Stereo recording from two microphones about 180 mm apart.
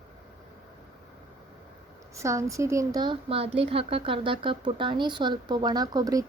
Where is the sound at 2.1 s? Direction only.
15° right (ahead or behind).